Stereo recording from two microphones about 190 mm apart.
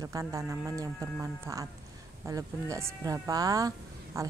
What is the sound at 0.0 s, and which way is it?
Speech, 20° right (ahead or behind).